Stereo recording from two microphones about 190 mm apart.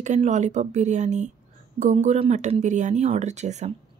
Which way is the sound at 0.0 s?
40° right (ahead or behind).